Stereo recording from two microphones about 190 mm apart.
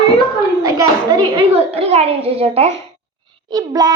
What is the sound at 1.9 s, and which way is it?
Speech, 35° right (ahead or behind).